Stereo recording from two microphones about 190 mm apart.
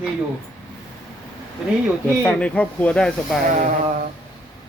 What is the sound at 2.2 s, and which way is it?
Speech, 5° left (ahead or behind).